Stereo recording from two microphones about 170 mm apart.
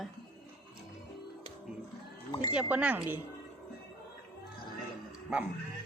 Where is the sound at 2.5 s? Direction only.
5° right (ahead or behind).